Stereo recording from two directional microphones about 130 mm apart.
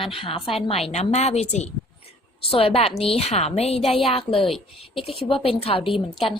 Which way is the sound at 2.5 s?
45° left (ahead or behind).